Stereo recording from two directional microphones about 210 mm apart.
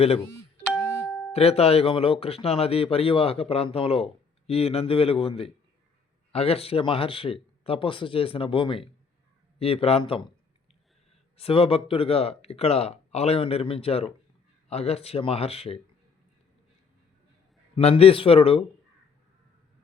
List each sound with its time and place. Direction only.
0.2 s doorbell: 10° left (ahead or behind)
1.3 s speech: 30° left (ahead or behind)
11.3 s speech: 25° left (ahead or behind)
17.7 s speech: 30° left (ahead or behind)